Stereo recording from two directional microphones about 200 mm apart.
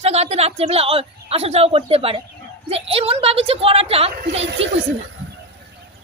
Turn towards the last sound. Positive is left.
turn(degrees=-30)  # may be behind; listen again after turning